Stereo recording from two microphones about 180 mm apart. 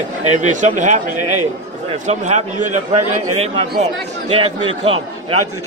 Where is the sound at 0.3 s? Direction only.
40° right (ahead or behind).